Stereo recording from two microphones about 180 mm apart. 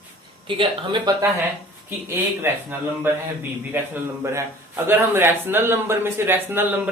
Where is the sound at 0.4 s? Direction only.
25° right (ahead or behind).